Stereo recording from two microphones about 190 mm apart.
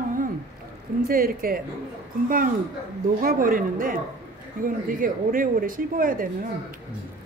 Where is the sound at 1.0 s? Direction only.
50° right (ahead or behind).